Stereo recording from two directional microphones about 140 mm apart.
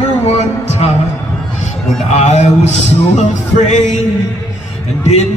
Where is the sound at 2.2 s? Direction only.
55° left (ahead or behind).